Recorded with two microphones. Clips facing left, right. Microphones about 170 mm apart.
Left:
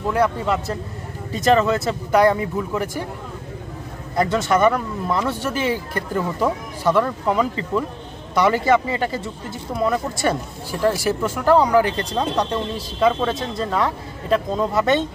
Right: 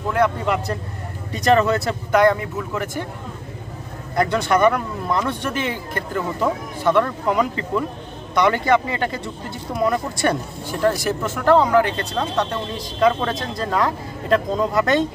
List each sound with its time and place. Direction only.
0.2 s speech: centre (ahead or behind)
4.3 s speech: centre (ahead or behind)